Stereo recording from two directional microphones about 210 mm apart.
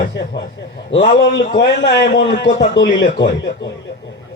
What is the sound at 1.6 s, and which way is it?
A man's voice, 55° left (ahead or behind).